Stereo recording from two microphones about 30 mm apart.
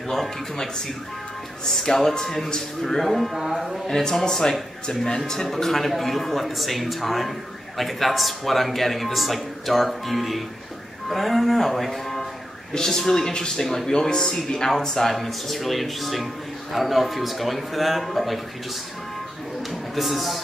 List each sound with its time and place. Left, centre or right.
2.1 s speech: centre
3.3 s mantra: centre
3.8 s a man's voice: centre
20.0 s a man's voice: centre